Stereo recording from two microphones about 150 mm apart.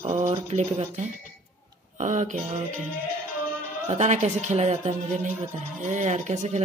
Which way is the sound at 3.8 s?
50° right (ahead or behind).